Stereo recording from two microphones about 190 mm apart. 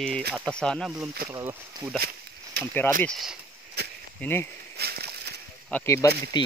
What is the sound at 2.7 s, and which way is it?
Speech, 10° left (ahead or behind).